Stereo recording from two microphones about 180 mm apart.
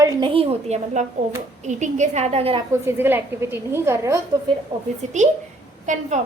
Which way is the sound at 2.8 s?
10° right (ahead or behind).